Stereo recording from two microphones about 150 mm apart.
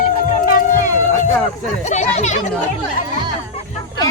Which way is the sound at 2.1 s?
50° left (ahead or behind).